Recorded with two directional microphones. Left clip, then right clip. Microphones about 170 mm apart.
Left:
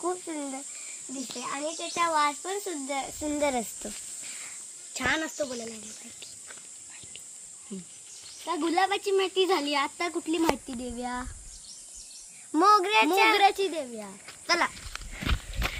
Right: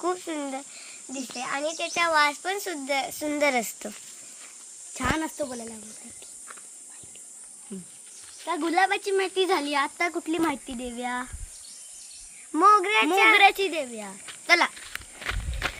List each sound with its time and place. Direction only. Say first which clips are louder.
0.0 s speech: right 3 dB; 15° right (ahead or behind)
4.9 s speech: even; 65° right (ahead or behind)
7.7 s speech: right 1 dB; 10° right (ahead or behind)
12.5 s speech: right 2 dB; 35° left (ahead or behind)
13.3 s speech: right 4 dB; 15° right (ahead or behind); by 14.1 s 30° right (ahead or behind)
14.4 s speech: right 5 dB; 50° right (ahead or behind)
14.9 s walk: right 1 dB; 30° right (ahead or behind)